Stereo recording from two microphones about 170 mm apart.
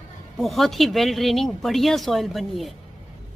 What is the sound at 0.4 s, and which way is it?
Speech, centre (ahead or behind).